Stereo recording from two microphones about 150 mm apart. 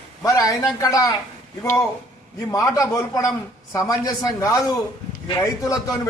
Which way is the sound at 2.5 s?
20° left (ahead or behind).